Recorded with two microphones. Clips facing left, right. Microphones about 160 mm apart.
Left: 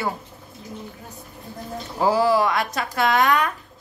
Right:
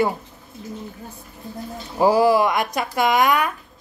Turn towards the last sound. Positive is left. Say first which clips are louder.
# right 1 dB
turn(degrees=-10)  # may be behind; listen again after turning